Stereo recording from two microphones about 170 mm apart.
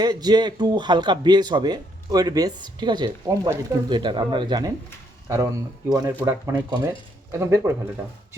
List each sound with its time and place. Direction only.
0.0 s speech: 25° right (ahead or behind)